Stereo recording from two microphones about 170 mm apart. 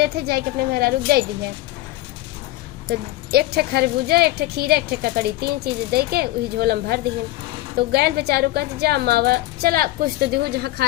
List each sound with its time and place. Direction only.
0.0 s speech: 70° right (ahead or behind)
2.8 s speech: 65° right (ahead or behind)